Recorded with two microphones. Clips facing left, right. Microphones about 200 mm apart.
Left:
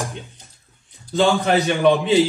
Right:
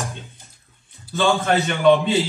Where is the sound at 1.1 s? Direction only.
15° left (ahead or behind).